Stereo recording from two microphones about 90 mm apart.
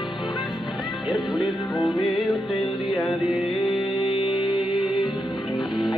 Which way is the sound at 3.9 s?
65° left (ahead or behind).